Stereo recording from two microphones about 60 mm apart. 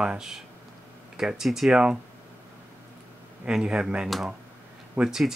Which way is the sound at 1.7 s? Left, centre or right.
Centre.